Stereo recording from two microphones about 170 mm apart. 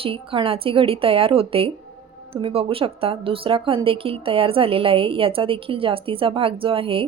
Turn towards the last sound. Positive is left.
turn(degrees=-35)  # may be behind; listen again after turning